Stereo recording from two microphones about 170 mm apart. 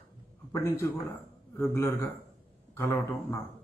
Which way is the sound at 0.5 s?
15° left (ahead or behind).